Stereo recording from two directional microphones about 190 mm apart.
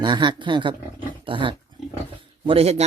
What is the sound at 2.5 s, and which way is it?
Speech, 30° right (ahead or behind).